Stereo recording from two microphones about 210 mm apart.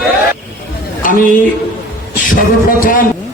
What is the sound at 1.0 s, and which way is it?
Speech, 40° left (ahead or behind).